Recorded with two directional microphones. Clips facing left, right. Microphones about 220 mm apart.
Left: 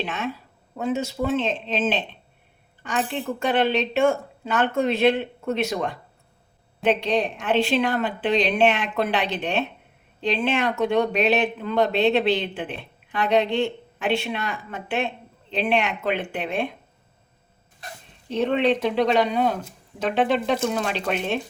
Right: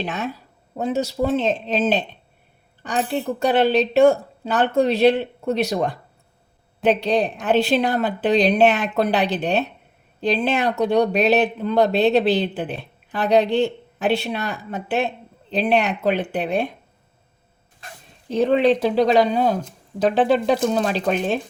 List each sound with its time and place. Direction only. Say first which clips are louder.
0.0 s speech: right 2 dB; 40° right (ahead or behind)
18.3 s speech: right 4 dB; 35° right (ahead or behind)